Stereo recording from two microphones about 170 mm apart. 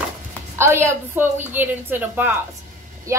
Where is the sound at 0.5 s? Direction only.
15° right (ahead or behind).